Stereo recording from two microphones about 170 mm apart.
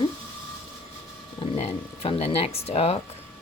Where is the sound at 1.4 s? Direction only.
35° left (ahead or behind).